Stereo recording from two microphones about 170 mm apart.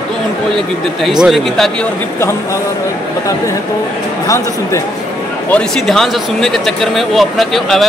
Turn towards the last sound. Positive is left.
turn(degrees=0)  # may be behind; listen again after turning